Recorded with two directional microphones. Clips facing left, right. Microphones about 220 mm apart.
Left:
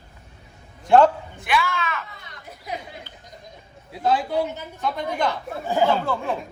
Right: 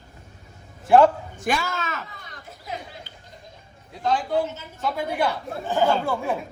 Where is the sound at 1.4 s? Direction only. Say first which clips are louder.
Left 1 dB; 45° right (ahead or behind).